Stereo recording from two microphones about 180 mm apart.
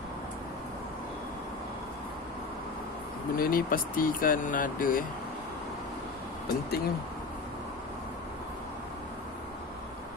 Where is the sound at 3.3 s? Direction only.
50° left (ahead or behind).